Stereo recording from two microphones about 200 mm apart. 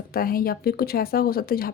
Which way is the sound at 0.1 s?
45° left (ahead or behind).